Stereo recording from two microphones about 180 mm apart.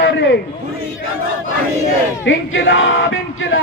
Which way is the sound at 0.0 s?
75° left (ahead or behind).